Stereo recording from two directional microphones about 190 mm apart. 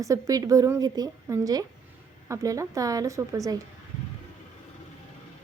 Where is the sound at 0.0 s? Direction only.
20° right (ahead or behind).